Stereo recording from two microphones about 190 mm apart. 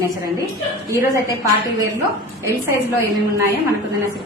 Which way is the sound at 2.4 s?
15° right (ahead or behind).